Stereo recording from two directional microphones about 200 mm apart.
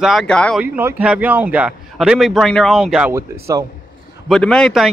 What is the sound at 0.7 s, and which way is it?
A man's voice, 10° right (ahead or behind).